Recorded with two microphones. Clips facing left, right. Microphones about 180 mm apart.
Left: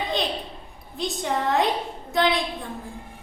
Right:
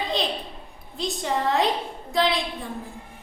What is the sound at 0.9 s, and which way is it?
A woman's voice, centre (ahead or behind).